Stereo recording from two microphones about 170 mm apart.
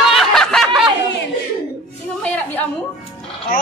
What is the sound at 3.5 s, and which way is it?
Speech, 55° left (ahead or behind).